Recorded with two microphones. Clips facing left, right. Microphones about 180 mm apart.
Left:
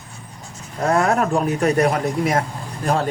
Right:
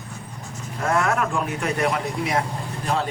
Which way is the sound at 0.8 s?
40° left (ahead or behind).